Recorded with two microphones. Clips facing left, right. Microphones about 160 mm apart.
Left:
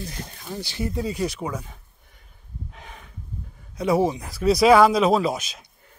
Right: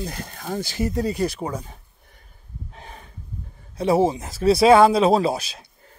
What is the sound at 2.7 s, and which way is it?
Snort, 35° right (ahead or behind).